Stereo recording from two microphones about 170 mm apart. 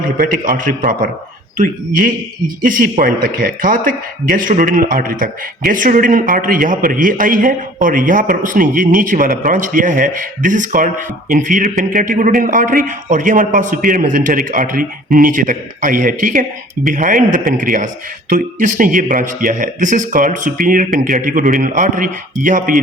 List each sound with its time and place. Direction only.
0.0 s a man's voice: 55° right (ahead or behind)